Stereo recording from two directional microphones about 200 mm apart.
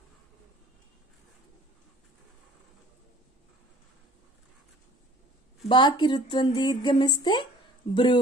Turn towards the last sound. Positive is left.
turn(degrees=25)  # may be behind; listen again after turning